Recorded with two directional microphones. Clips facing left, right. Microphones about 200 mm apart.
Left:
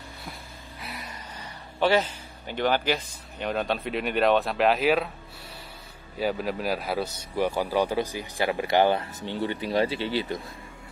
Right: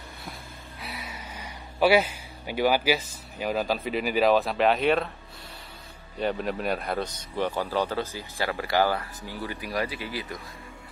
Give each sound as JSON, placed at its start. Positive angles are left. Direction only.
{"t": 0.7, "sound": "speech", "side_deg": 0}
{"t": 6.1, "sound": "speech", "side_deg": 5}